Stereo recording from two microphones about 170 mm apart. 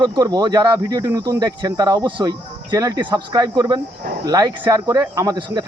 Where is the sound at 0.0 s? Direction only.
25° right (ahead or behind).